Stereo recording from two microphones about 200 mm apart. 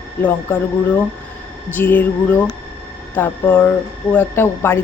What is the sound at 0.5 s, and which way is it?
Speech, 10° left (ahead or behind).